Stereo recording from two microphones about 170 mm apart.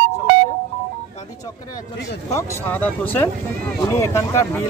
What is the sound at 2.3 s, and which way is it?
Speech, 15° left (ahead or behind).